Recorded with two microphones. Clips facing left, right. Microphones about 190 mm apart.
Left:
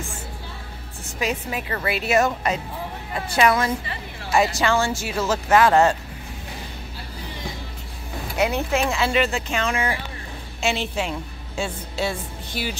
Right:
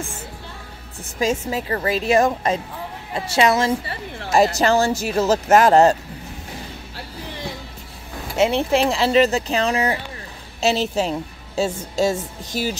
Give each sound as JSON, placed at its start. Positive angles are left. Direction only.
{"t": 1.5, "sound": "a woman's voice", "side_deg": -30}
{"t": 8.4, "sound": "a woman's voice", "side_deg": -30}